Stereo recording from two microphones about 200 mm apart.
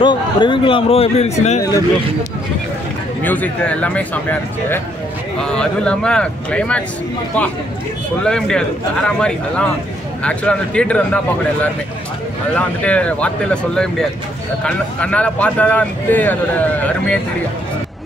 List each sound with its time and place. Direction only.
0.0 s a man's voice: 25° left (ahead or behind)
3.2 s a man's voice: 10° left (ahead or behind)
8.2 s a man's voice: 5° left (ahead or behind)
12.5 s a man's voice: 5° left (ahead or behind)